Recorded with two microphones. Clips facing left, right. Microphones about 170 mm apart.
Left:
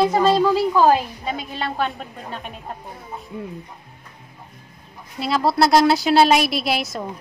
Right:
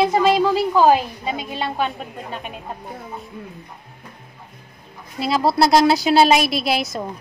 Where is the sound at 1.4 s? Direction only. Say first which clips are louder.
Right 2 dB; 20° right (ahead or behind).